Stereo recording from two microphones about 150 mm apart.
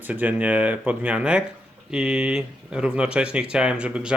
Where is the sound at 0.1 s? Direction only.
10° right (ahead or behind).